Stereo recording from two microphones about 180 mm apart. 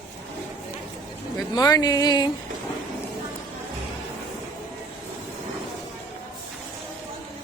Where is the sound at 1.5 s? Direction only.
20° left (ahead or behind).